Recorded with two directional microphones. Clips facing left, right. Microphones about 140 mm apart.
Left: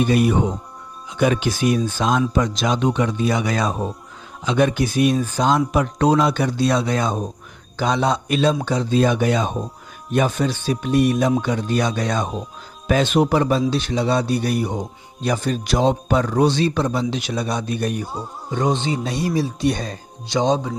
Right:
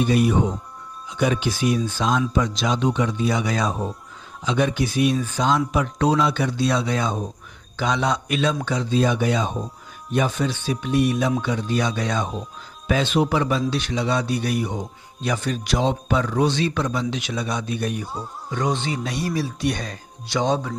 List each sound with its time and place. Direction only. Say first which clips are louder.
0.0 s a man's voice: left 2 dB; 65° left (ahead or behind); by 8.5 s 35° left (ahead or behind)
8.9 s a man's voice: left 3 dB; 55° left (ahead or behind); by 17.6 s 40° left (ahead or behind)
17.6 s speech: left 3 dB; 50° left (ahead or behind)
18.5 s speech: left 3 dB; 25° left (ahead or behind)